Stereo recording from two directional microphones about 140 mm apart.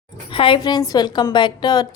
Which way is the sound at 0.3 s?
40° left (ahead or behind).